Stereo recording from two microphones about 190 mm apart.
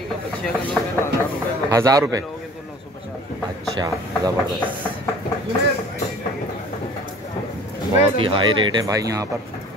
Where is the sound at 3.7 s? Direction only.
20° right (ahead or behind).